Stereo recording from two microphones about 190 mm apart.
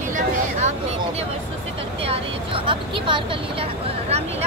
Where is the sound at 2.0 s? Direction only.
30° right (ahead or behind).